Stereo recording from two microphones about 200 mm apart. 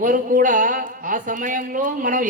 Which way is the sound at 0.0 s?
40° right (ahead or behind).